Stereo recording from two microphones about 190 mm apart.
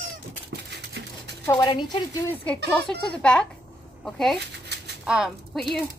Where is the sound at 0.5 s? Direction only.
60° right (ahead or behind).